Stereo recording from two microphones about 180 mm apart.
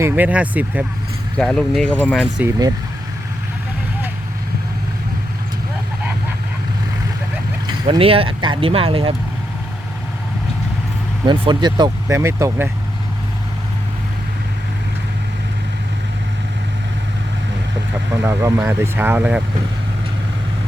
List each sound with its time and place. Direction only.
0.0 s speech: 10° right (ahead or behind)
2.0 s speech: 5° right (ahead or behind)
7.9 s speech: 30° right (ahead or behind)
11.3 s speech: 25° right (ahead or behind)
18.1 s speech: 15° right (ahead or behind)